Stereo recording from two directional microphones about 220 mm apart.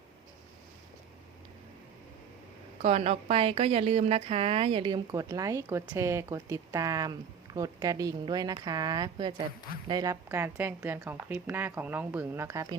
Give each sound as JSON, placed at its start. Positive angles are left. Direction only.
{"t": 2.8, "sound": "a woman's voice", "side_deg": -30}